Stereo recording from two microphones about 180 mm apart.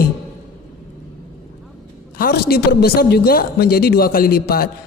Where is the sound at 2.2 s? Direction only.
60° left (ahead or behind).